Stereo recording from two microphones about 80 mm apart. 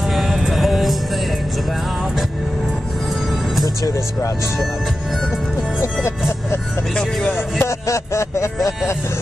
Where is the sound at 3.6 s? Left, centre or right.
Left.